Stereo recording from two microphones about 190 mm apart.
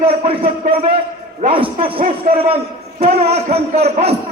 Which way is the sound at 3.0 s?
35° right (ahead or behind).